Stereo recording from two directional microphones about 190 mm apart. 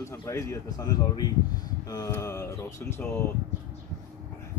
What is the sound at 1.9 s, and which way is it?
Speech, 20° left (ahead or behind).